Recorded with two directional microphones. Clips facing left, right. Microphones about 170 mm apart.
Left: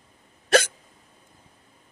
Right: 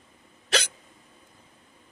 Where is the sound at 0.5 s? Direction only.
50° left (ahead or behind).